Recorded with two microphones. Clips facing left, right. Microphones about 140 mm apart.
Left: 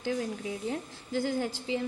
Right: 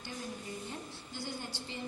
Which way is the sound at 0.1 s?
90° left.